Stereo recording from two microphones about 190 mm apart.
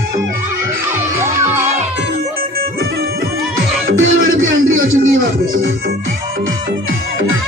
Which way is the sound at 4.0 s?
90° right.